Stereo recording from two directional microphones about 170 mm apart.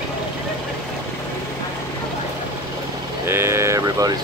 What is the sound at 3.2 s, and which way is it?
Speech, 15° right (ahead or behind).